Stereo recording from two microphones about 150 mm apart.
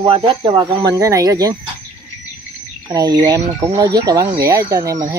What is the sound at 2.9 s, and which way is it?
Speech, 25° right (ahead or behind).